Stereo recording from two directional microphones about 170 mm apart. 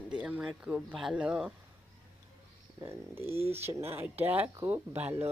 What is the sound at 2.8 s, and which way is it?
Speech, 15° right (ahead or behind).